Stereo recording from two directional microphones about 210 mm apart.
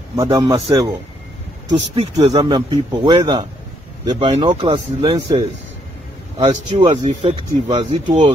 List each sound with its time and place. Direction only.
0.1 s a man's voice: 15° right (ahead or behind)
2.1 s speech: 20° right (ahead or behind)